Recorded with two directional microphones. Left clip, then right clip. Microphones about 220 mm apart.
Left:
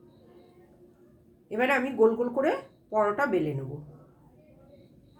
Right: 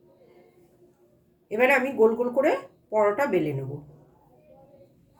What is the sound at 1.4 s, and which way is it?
Speech, 15° right (ahead or behind).